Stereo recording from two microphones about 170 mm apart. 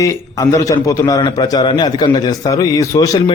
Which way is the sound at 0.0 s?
20° left (ahead or behind).